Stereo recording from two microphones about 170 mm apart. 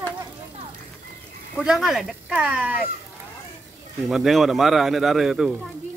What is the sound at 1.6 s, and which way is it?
Speech, 5° right (ahead or behind).